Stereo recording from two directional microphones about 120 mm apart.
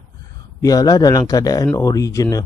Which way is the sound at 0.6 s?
30° left (ahead or behind).